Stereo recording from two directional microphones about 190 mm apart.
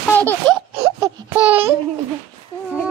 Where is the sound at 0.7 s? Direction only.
30° right (ahead or behind).